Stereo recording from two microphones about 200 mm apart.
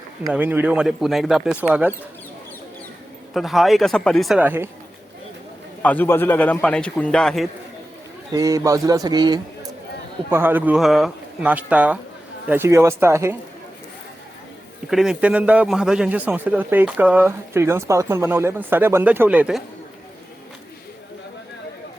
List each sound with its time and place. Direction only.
0.3 s speech: 5° right (ahead or behind)
3.3 s speech: centre (ahead or behind)
5.8 s a man's voice: 10° left (ahead or behind)
8.3 s a man's voice: 15° right (ahead or behind)
10.2 s a man's voice: 10° right (ahead or behind)
14.8 s a man's voice: centre (ahead or behind)